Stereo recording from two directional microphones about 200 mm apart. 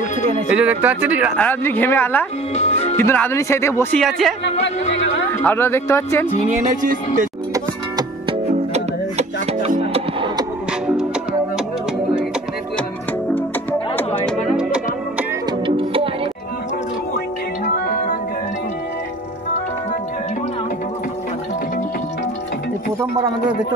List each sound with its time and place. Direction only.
0.5 s speech: 5° right (ahead or behind)
1.3 s speech: 10° left (ahead or behind)
4.0 s speech: centre (ahead or behind)
5.4 s speech: 10° left (ahead or behind)
6.7 s speech: 40° right (ahead or behind)
8.3 s music: 30° right (ahead or behind)
13.3 s music: 10° left (ahead or behind)
15.6 s music: 25° right (ahead or behind)
17.6 s music: 45° left (ahead or behind)
22.9 s speech: 20° right (ahead or behind)